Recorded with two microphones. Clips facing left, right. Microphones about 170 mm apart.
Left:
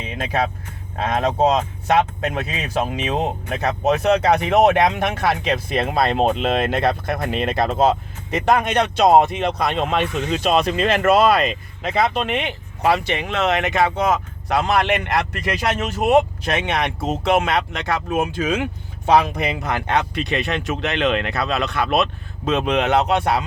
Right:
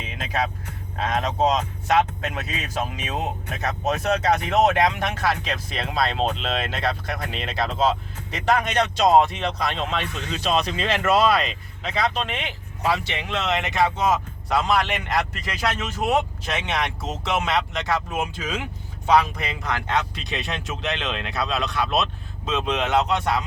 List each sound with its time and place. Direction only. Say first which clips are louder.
0.3 s speech: left 3 dB; 55° left (ahead or behind)